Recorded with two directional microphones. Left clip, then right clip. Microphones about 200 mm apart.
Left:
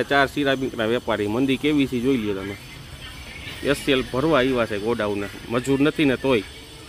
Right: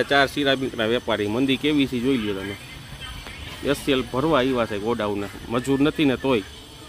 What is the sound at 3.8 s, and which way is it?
Speech, 5° left (ahead or behind).